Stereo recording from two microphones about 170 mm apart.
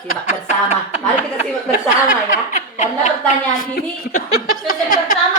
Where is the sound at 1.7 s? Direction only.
50° left (ahead or behind).